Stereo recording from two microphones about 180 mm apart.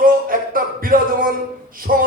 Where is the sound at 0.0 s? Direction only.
50° right (ahead or behind).